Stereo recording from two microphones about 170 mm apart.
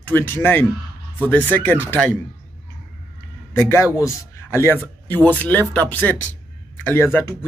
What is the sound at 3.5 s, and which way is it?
Speech, 15° left (ahead or behind).